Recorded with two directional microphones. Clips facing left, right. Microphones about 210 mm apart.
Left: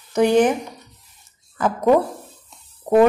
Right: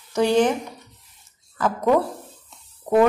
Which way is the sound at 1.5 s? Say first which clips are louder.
Left 3 dB; 20° left (ahead or behind).